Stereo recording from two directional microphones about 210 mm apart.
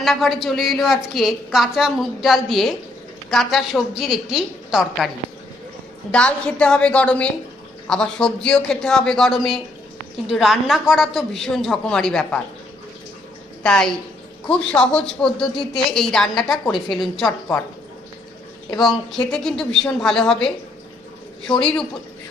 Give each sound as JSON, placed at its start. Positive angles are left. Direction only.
{"t": 0.0, "sound": "a woman's voice", "side_deg": 0}
{"t": 13.6, "sound": "a woman's voice", "side_deg": 5}
{"t": 18.8, "sound": "a woman's voice", "side_deg": 0}